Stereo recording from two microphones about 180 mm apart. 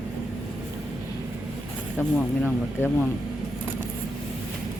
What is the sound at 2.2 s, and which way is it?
Speech, 5° left (ahead or behind).